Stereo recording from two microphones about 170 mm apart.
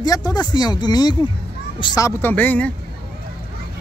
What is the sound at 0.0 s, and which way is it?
Speech, 20° left (ahead or behind).